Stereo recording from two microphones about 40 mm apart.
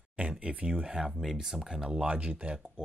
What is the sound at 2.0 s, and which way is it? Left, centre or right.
Speech, right.